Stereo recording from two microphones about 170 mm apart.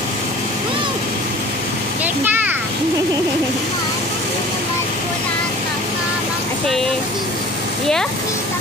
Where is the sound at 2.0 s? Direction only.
10° right (ahead or behind).